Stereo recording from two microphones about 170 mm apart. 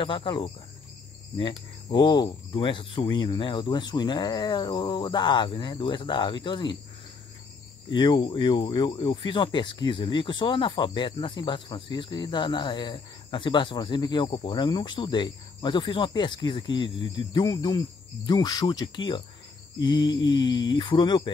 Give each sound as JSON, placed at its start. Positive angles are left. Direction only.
{"t": 0.0, "sound": "speech", "side_deg": 30}
{"t": 7.9, "sound": "speech", "side_deg": 25}